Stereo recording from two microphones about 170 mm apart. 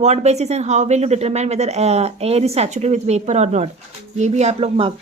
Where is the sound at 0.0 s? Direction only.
40° right (ahead or behind).